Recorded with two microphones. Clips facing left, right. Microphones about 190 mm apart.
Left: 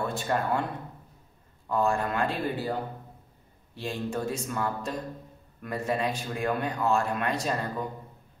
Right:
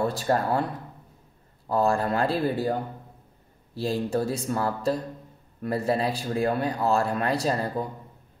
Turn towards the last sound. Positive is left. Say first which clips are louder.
# right 4 dB
turn(degrees=-35)  # may be behind; listen again after turning